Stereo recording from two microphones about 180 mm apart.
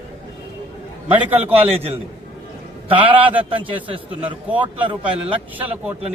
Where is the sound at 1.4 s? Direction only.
35° right (ahead or behind).